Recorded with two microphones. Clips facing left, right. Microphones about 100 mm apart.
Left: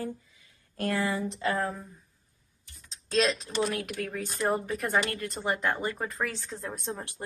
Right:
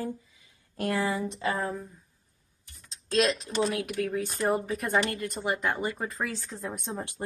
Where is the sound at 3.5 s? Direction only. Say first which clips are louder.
Right 1 dB; 15° left (ahead or behind).